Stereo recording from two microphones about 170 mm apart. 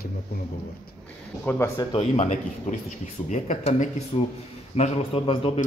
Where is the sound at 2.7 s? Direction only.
40° left (ahead or behind).